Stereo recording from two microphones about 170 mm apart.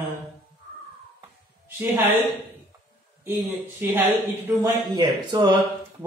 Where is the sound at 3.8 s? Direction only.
15° right (ahead or behind).